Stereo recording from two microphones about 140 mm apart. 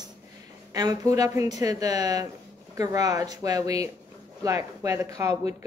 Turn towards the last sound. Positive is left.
turn(degrees=-25)  # may be behind; listen again after turning